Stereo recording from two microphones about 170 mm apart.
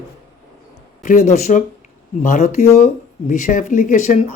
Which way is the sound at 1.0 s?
50° left (ahead or behind).